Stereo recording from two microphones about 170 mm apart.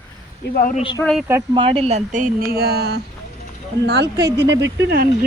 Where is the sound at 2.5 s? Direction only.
65° right (ahead or behind).